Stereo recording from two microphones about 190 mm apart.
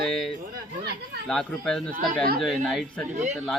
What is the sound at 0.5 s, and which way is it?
Speech, 60° right (ahead or behind).